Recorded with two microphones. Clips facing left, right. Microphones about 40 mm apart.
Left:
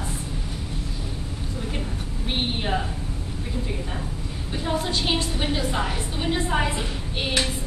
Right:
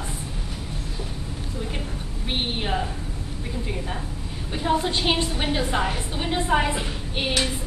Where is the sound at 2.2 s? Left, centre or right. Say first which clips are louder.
Even; centre.